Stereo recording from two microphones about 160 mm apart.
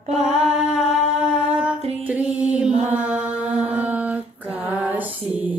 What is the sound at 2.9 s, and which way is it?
Mantra, 10° right (ahead or behind).